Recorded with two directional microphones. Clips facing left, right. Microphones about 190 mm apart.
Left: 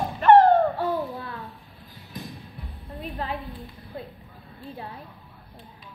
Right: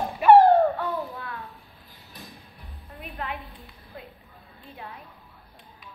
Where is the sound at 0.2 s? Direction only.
10° right (ahead or behind).